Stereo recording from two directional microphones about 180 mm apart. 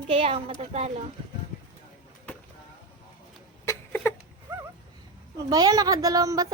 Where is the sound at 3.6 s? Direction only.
10° left (ahead or behind).